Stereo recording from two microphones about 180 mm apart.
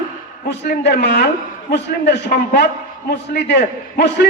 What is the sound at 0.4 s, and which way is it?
A man's voice, 70° left (ahead or behind).